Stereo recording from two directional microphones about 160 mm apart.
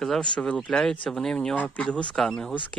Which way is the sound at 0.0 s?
5° left (ahead or behind).